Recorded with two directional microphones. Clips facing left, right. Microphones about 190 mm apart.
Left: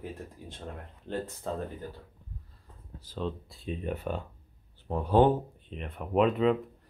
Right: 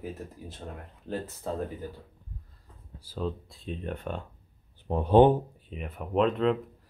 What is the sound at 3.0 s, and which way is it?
Speech, 5° right (ahead or behind).